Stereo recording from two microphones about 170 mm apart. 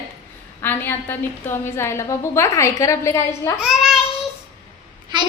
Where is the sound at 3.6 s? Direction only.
Centre (ahead or behind).